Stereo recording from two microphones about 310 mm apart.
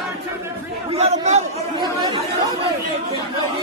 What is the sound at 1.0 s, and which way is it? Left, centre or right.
Chatter, right.